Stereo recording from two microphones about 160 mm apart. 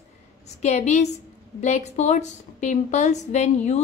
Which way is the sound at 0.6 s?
45° left (ahead or behind).